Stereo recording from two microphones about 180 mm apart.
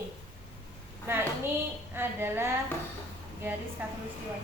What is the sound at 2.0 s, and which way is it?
A woman's voice, 10° right (ahead or behind).